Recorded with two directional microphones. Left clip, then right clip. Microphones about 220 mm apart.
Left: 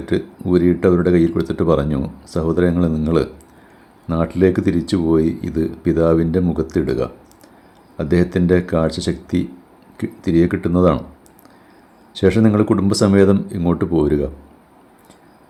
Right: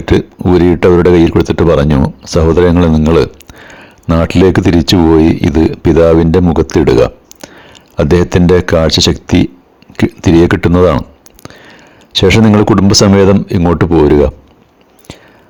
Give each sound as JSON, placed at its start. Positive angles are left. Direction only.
{"t": 0.0, "sound": "speech", "side_deg": -35}
{"t": 12.1, "sound": "speech", "side_deg": -40}